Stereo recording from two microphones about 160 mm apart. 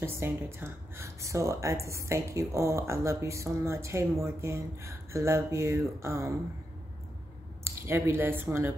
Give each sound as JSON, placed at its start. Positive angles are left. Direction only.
{"t": 0.0, "sound": "speech", "side_deg": -15}
{"t": 7.6, "sound": "speech", "side_deg": -15}